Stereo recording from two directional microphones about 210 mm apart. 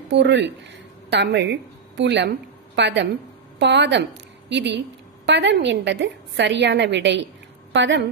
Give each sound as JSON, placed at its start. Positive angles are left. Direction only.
{"t": 0.1, "sound": "a woman's voice", "side_deg": -55}